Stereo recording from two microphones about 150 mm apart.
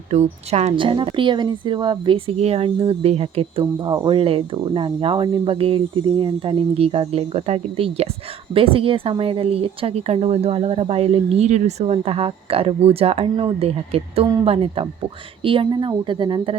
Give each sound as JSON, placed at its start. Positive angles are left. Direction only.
{"t": 0.1, "sound": "a woman's voice", "side_deg": -45}